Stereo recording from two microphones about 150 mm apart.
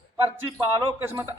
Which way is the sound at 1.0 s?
15° right (ahead or behind).